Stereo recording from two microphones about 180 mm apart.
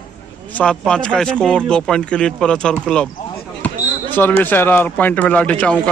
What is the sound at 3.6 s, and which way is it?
Basketball bounce, 10° left (ahead or behind).